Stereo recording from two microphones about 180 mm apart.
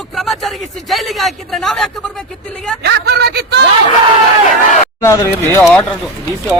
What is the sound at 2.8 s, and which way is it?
Speech, 65° right (ahead or behind).